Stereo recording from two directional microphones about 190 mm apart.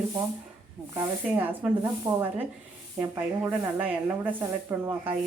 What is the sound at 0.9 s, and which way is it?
Speech, 10° right (ahead or behind).